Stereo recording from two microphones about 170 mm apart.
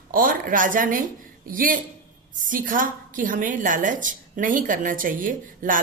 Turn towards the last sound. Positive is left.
turn(degrees=-50)  # may be behind; listen again after turning